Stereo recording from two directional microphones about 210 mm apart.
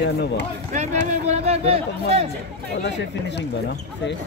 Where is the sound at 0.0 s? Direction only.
55° left (ahead or behind).